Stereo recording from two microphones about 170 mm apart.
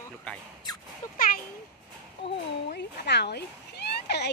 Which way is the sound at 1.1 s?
55° left (ahead or behind).